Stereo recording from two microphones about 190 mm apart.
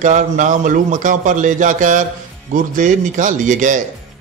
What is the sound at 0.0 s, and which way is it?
A man's voice, 40° right (ahead or behind).